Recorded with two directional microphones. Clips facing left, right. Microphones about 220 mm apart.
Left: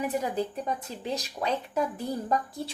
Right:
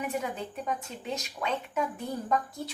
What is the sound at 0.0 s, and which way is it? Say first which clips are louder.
Speech: left 4 dB; 35° left (ahead or behind).